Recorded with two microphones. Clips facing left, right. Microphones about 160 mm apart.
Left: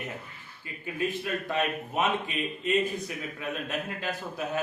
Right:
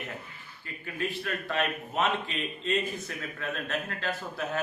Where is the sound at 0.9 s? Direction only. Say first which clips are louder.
Left 2 dB; 15° left (ahead or behind).